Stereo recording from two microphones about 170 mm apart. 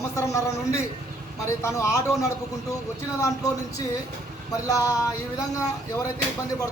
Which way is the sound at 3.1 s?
20° left (ahead or behind).